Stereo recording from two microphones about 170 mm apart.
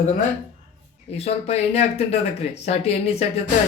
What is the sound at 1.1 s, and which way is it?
Speech, 40° left (ahead or behind).